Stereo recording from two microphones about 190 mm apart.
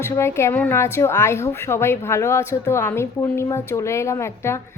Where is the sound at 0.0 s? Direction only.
15° left (ahead or behind).